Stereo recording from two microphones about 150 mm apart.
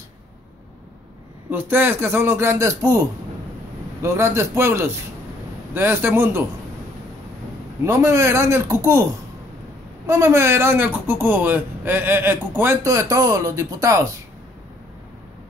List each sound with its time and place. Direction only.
1.5 s speech: 15° right (ahead or behind)
4.0 s speech: 15° right (ahead or behind)
7.8 s a man's voice: 20° right (ahead or behind)
10.0 s speech: 20° right (ahead or behind)